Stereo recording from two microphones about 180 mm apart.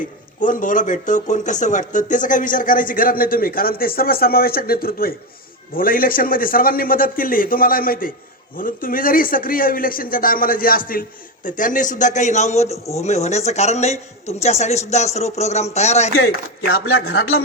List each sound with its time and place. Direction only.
0.3 s a woman's voice: 45° left (ahead or behind)
16.6 s speech: 60° left (ahead or behind)